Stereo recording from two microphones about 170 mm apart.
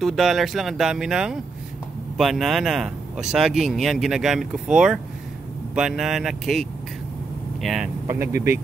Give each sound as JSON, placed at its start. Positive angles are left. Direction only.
{"t": 0.0, "sound": "speech", "side_deg": 0}
{"t": 8.1, "sound": "speech", "side_deg": -15}